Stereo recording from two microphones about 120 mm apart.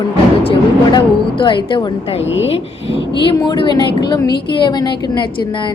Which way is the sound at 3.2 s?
40° left (ahead or behind).